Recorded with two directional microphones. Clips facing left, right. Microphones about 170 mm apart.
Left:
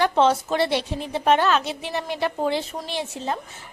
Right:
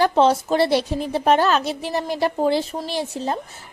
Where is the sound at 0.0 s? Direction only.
35° right (ahead or behind).